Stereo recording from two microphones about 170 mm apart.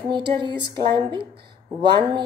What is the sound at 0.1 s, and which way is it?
A woman's voice, 30° right (ahead or behind).